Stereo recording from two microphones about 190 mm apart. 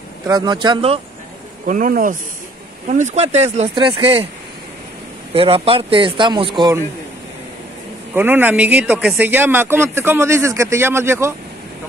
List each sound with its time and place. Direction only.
0.3 s speech: 20° right (ahead or behind)
1.7 s speech: 45° right (ahead or behind); by 4.3 s 30° right (ahead or behind)
5.3 s speech: 30° right (ahead or behind)
8.1 s a man's voice: 10° right (ahead or behind)